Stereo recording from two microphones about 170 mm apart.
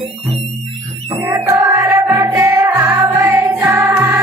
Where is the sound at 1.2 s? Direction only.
15° right (ahead or behind).